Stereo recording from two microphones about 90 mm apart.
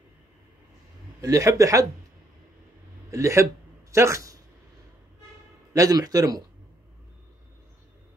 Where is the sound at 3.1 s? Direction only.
35° right (ahead or behind).